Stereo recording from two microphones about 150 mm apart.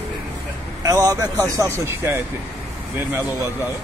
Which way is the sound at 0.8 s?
25° right (ahead or behind).